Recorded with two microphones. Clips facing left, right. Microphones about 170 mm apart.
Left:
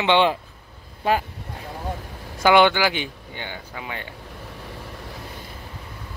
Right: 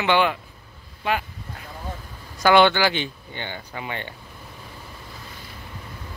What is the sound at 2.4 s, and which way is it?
Speech, 15° left (ahead or behind).